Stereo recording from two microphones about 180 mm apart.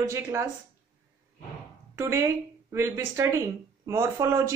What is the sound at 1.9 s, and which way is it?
Speech, 15° right (ahead or behind).